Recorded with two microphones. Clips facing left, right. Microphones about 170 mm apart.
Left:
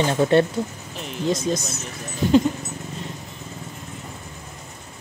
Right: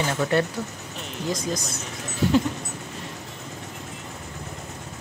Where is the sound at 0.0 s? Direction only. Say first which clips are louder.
Left 5 dB; 25° left (ahead or behind).